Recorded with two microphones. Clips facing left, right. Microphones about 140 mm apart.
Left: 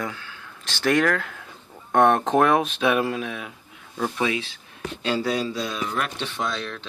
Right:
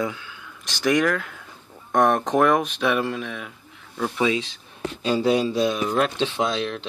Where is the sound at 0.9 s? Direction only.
Centre (ahead or behind).